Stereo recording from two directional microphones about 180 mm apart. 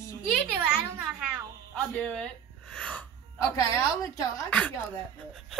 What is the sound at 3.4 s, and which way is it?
A woman's voice, 15° left (ahead or behind).